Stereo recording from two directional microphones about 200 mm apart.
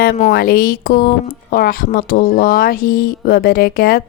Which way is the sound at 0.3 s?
50° left (ahead or behind).